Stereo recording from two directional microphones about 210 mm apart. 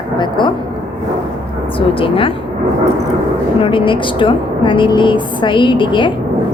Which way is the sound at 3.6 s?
25° left (ahead or behind).